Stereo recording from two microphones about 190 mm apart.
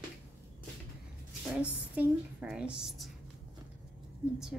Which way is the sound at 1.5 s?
5° right (ahead or behind).